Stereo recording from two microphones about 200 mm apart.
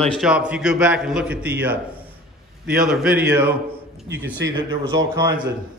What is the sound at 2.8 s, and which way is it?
Speech, 5° right (ahead or behind).